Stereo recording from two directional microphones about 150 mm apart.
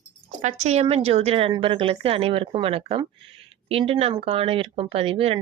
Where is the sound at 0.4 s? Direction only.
45° right (ahead or behind).